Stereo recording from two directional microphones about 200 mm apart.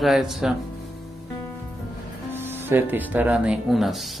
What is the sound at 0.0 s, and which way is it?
Speech, centre (ahead or behind).